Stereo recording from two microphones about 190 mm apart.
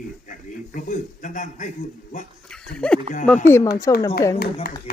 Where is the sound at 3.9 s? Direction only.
20° left (ahead or behind).